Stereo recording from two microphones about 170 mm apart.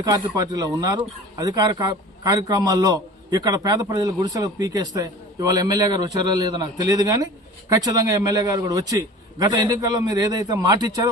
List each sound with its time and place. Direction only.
0.0 s speech: 20° right (ahead or behind)